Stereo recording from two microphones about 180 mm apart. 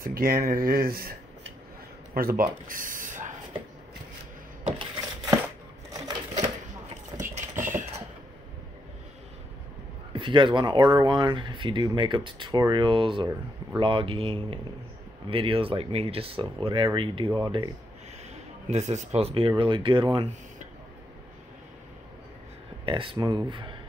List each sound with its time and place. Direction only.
0.0 s speech: 55° right (ahead or behind)
2.1 s speech: 55° right (ahead or behind)
4.7 s a sound: 20° right (ahead or behind)
7.2 s typing: 45° right (ahead or behind)
10.1 s speech: 30° right (ahead or behind)
18.3 s speech: 40° right (ahead or behind)
22.8 s speech: 30° right (ahead or behind)